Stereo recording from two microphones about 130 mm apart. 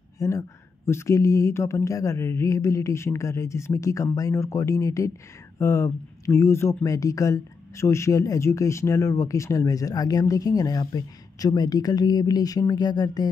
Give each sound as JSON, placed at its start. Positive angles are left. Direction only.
{"t": 0.2, "sound": "speech", "side_deg": 25}